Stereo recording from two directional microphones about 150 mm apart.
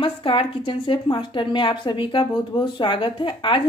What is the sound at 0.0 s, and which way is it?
Speech, 35° left (ahead or behind).